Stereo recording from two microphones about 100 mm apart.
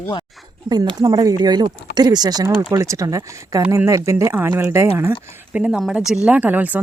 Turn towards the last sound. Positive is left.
turn(degrees=-15)  # may be behind; listen again after turning